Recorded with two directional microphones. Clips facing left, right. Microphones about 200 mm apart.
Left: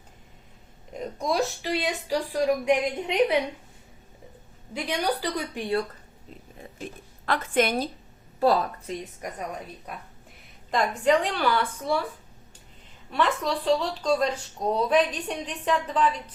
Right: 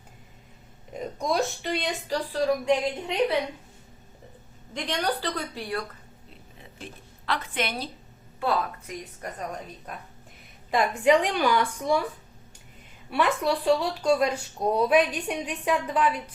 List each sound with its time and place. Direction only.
0.9 s speech: centre (ahead or behind); by 3.3 s 15° left (ahead or behind)
4.7 s a woman's voice: 10° left (ahead or behind)
7.3 s a woman's voice: 45° left (ahead or behind)
9.2 s a woman's voice: 15° left (ahead or behind)
10.7 s speech: 10° right (ahead or behind)
13.1 s speech: 10° right (ahead or behind)